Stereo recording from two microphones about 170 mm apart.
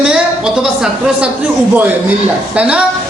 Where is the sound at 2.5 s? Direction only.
5° right (ahead or behind).